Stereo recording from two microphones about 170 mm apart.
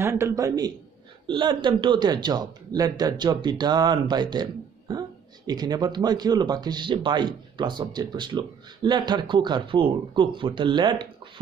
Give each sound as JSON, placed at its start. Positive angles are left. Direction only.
{"t": 0.0, "sound": "speech", "side_deg": -15}